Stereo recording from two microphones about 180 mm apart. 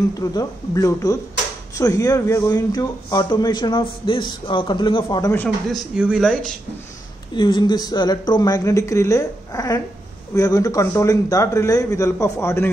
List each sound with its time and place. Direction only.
0.2 s speech: 20° left (ahead or behind)
5.3 s a man's voice: 10° left (ahead or behind)
5.9 s speech: 5° right (ahead or behind)
7.3 s a man's voice: 25° left (ahead or behind)